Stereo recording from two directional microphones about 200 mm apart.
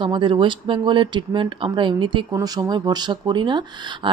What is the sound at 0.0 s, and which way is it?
Speech, 25° right (ahead or behind).